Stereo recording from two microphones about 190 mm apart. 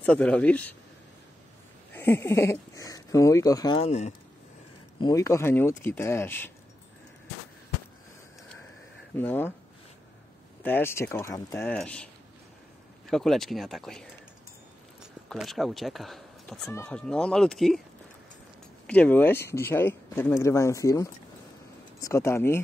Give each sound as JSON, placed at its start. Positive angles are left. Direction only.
{"t": 0.0, "sound": "speech", "side_deg": 5}
{"t": 1.9, "sound": "speech", "side_deg": 10}
{"t": 3.8, "sound": "speech", "side_deg": 35}
{"t": 5.0, "sound": "speech", "side_deg": 15}
{"t": 9.1, "sound": "speech", "side_deg": 10}
{"t": 10.6, "sound": "speech", "side_deg": 10}
{"t": 13.1, "sound": "speech", "side_deg": 0}
{"t": 15.2, "sound": "speech", "side_deg": 0}
{"t": 18.9, "sound": "speech", "side_deg": 10}